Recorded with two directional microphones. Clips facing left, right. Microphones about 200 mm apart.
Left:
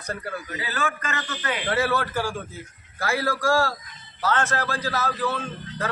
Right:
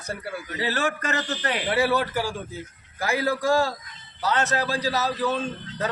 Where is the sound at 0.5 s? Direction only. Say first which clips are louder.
Right 5 dB; 35° right (ahead or behind).